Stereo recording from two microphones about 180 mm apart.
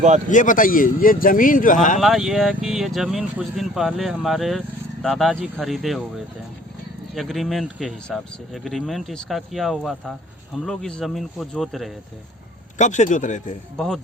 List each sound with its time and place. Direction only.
0.3 s speech: 45° left (ahead or behind)
2.0 s speech: centre (ahead or behind)
7.1 s speech: centre (ahead or behind)
12.8 s speech: 45° left (ahead or behind)
13.7 s speech: 5° left (ahead or behind)